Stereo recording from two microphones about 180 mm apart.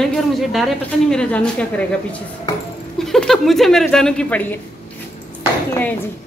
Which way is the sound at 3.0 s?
Centre (ahead or behind).